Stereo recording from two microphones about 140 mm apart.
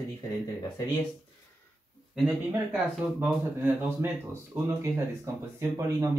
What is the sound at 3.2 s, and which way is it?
Speech, 15° right (ahead or behind).